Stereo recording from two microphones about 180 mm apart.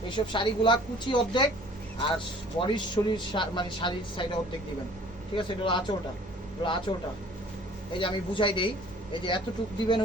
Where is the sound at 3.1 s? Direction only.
25° left (ahead or behind).